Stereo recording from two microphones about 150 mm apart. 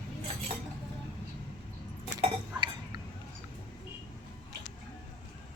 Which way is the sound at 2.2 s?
30° right (ahead or behind).